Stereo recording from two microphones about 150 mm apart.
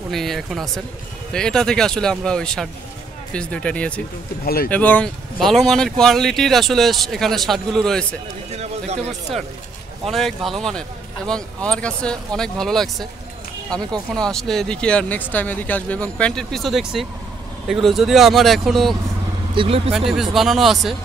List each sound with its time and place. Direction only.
0.1 s speech: centre (ahead or behind)
8.5 s chatter: 45° right (ahead or behind)
10.0 s speech: centre (ahead or behind)
14.1 s speech: 5° left (ahead or behind)
19.5 s speech: 35° right (ahead or behind)
20.1 s speech: centre (ahead or behind)